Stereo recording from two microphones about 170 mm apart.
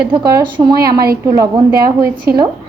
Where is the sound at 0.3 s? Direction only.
25° right (ahead or behind).